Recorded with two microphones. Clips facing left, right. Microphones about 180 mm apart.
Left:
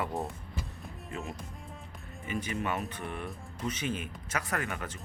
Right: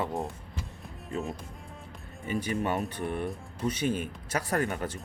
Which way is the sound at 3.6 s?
35° right (ahead or behind).